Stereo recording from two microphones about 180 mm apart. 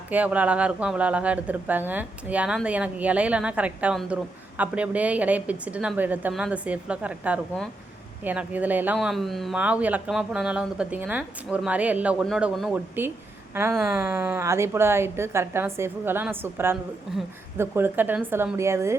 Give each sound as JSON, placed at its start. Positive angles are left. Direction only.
{"t": 0.1, "sound": "a woman's voice", "side_deg": -10}